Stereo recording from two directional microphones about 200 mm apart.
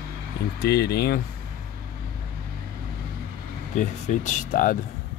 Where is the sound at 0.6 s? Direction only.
55° left (ahead or behind).